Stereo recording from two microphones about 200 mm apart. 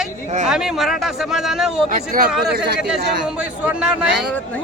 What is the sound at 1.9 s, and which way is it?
Speech, 45° right (ahead or behind).